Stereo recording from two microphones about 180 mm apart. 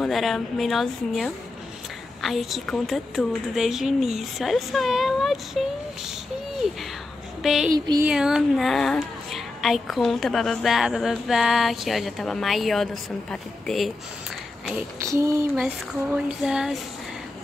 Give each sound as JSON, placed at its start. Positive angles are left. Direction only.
{"t": 0.0, "sound": "a child's voice", "side_deg": 0}
{"t": 15.0, "sound": "a sound", "side_deg": -15}
{"t": 16.3, "sound": "speech", "side_deg": -5}